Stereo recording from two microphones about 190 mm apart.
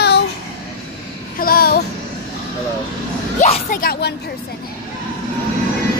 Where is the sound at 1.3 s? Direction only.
50° left (ahead or behind).